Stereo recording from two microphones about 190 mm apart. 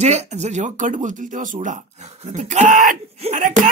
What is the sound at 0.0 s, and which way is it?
Speech, 35° right (ahead or behind).